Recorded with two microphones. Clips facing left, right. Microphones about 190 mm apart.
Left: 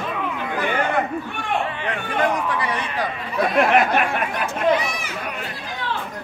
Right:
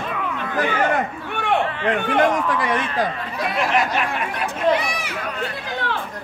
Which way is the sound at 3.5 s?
55° left (ahead or behind).